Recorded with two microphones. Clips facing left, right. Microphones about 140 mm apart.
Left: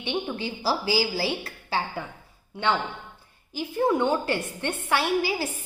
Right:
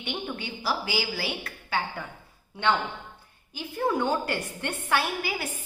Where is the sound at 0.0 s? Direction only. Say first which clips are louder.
Left 5 dB; 30° left (ahead or behind).